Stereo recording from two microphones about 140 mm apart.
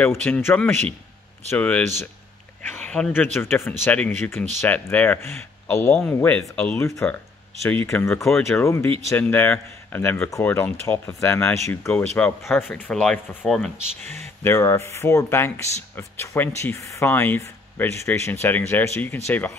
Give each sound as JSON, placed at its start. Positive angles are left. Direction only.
{"t": 0.0, "sound": "speech", "side_deg": 15}
{"t": 2.9, "sound": "speech", "side_deg": 10}
{"t": 14.0, "sound": "speech", "side_deg": -55}
{"t": 14.4, "sound": "speech", "side_deg": 15}